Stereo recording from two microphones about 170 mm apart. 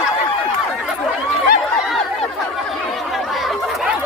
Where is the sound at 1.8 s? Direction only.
Centre (ahead or behind).